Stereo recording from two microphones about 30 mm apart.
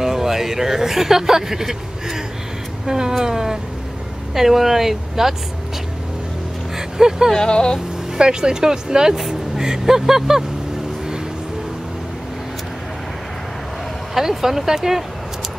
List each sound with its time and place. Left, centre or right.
0.0 s speech: centre
4.3 s speech: centre
7.0 s speech: centre
7.3 s speech: left
8.2 s speech: right
14.1 s speech: centre